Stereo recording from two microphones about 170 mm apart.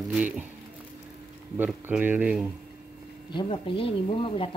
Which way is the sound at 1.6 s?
10° right (ahead or behind).